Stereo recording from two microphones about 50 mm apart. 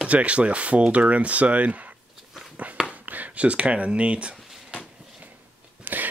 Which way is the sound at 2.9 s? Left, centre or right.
Right.